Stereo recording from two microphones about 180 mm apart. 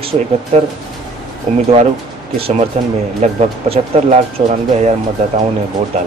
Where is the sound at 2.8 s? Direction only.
35° right (ahead or behind).